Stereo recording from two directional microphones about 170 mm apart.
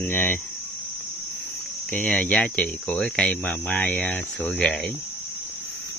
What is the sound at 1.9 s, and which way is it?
Speech, 10° left (ahead or behind).